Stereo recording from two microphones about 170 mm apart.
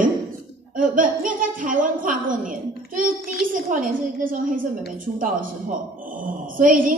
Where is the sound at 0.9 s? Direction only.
55° right (ahead or behind).